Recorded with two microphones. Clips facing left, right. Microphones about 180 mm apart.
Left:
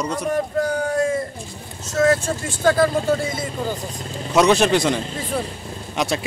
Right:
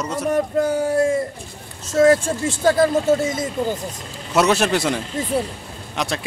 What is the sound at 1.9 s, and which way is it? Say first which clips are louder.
Speech: right 3 dB; 30° right (ahead or behind).